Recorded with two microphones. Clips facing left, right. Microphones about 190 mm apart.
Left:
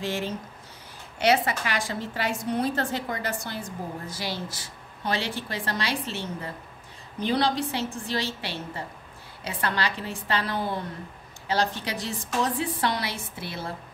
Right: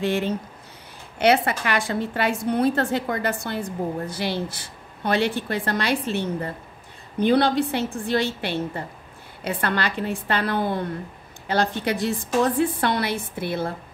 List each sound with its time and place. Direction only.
0.0 s a woman's voice: 60° right (ahead or behind)